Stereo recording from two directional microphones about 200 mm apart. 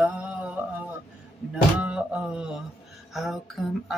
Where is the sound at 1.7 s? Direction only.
5° right (ahead or behind).